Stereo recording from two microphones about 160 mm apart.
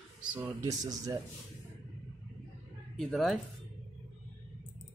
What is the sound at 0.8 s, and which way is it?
Speech, 20° right (ahead or behind).